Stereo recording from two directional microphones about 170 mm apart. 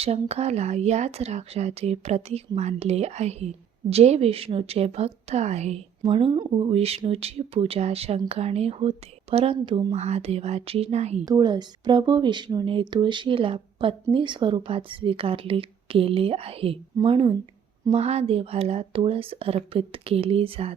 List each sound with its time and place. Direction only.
0.0 s speech: 35° right (ahead or behind)
11.3 s speech: 25° right (ahead or behind)